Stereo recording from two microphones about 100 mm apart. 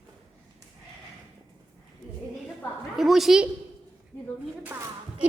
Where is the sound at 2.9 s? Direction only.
Centre (ahead or behind).